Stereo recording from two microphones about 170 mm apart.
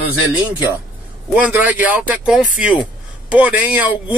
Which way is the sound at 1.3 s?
10° right (ahead or behind).